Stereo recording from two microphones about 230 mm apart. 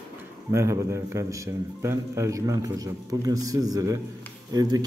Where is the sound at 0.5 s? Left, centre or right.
Centre.